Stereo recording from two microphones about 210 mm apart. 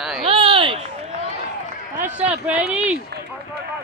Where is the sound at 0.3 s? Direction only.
25° right (ahead or behind).